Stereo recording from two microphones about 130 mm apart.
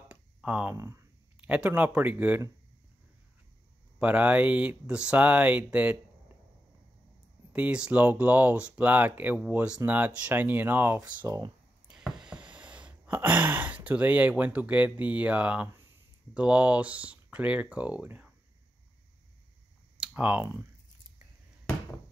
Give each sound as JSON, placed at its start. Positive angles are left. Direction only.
{"t": 0.1, "sound": "a sound", "side_deg": -10}
{"t": 0.7, "sound": "speech", "side_deg": -25}
{"t": 1.5, "sound": "speech", "side_deg": -10}
{"t": 4.0, "sound": "speech", "side_deg": -10}
{"t": 7.5, "sound": "speech", "side_deg": -10}
{"t": 11.2, "sound": "speech", "side_deg": -25}
{"t": 11.9, "sound": "a sound", "side_deg": -5}
{"t": 13.8, "sound": "speech", "side_deg": -10}
{"t": 20.0, "sound": "a sound", "side_deg": -10}